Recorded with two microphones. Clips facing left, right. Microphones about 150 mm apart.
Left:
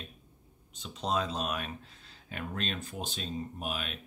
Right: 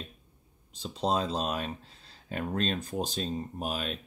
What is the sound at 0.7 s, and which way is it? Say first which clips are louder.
Speech: right 3 dB; 35° right (ahead or behind).